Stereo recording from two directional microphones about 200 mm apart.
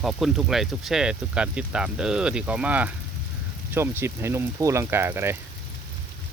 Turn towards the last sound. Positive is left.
turn(degrees=-10)  # may be behind; listen again after turning